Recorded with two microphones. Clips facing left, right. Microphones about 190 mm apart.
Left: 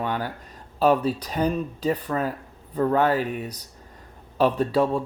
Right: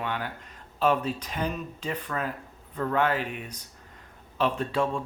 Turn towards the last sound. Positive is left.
turn(degrees=35)  # may be behind; listen again after turning